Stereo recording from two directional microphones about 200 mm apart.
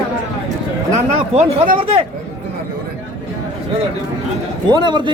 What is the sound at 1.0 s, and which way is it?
Speech, 35° right (ahead or behind).